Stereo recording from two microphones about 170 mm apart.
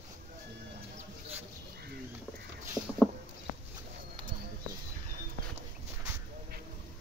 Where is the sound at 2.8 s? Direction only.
Centre (ahead or behind).